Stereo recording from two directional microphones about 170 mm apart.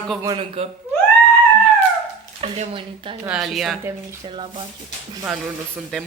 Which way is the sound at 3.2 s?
Centre (ahead or behind).